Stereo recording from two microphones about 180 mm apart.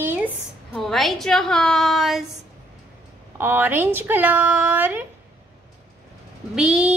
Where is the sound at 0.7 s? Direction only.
Centre (ahead or behind).